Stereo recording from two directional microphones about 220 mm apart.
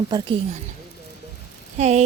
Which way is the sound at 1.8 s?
30° right (ahead or behind).